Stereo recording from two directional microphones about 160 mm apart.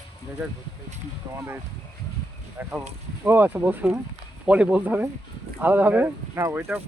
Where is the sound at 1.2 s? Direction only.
25° right (ahead or behind).